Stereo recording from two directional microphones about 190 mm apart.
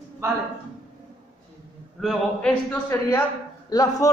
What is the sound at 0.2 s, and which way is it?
Speech, 15° right (ahead or behind).